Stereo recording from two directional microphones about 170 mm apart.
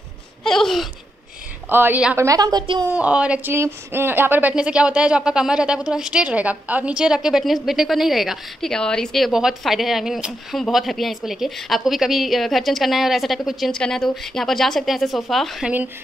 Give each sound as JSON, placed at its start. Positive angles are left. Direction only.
{"t": 0.4, "sound": "a sound", "side_deg": 0}
{"t": 1.7, "sound": "a woman's voice", "side_deg": -10}
{"t": 2.2, "sound": "a woman's voice", "side_deg": -20}
{"t": 2.9, "sound": "speech", "side_deg": -5}